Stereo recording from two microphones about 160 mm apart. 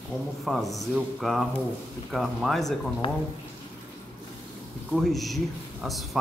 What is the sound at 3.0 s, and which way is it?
Speech, 35° left (ahead or behind).